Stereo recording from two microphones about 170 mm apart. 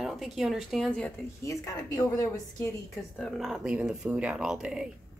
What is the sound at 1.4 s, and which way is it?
Speech, 20° left (ahead or behind).